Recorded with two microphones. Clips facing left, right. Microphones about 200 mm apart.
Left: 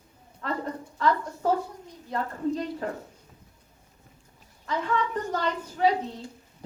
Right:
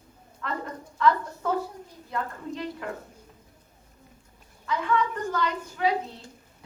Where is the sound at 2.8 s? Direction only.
35° left (ahead or behind).